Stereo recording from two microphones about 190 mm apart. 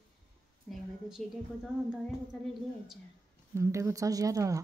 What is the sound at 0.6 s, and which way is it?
A woman's voice, centre (ahead or behind).